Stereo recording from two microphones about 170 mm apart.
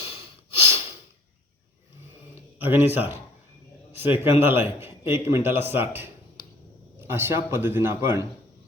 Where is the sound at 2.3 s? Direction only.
15° right (ahead or behind).